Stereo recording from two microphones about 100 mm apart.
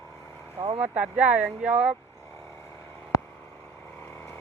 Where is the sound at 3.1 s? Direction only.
35° left (ahead or behind).